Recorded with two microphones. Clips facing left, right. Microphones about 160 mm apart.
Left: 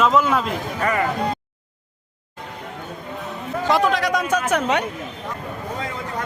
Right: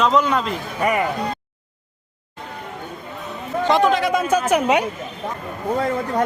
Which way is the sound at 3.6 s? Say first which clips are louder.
Right 2 dB; centre (ahead or behind).